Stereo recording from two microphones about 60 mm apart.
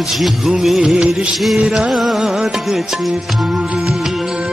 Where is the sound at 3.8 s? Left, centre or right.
Centre.